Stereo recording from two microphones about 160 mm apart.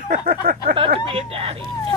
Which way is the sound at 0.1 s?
65° right (ahead or behind).